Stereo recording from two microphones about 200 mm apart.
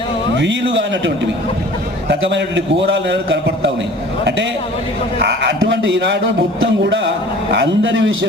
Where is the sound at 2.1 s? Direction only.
60° right (ahead or behind).